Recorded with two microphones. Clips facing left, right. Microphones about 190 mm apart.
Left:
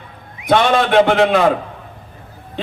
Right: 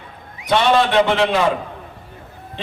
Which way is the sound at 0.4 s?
55° left (ahead or behind).